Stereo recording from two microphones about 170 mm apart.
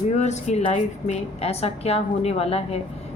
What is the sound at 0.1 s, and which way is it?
A woman's voice, 40° left (ahead or behind).